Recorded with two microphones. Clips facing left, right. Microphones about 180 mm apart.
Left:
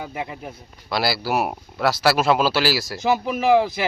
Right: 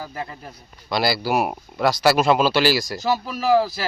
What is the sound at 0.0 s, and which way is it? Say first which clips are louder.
Speech: left 2 dB; 15° left (ahead or behind).